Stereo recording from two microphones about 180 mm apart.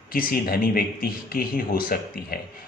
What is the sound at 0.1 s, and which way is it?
Speech, 55° left (ahead or behind).